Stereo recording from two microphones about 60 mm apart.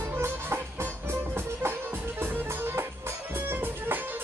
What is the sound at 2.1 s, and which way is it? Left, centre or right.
Music, right.